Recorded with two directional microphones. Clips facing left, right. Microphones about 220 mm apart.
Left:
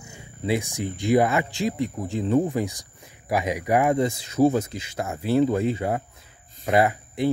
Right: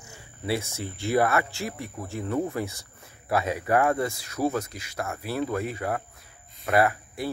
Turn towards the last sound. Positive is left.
turn(degrees=20)  # may be behind; listen again after turning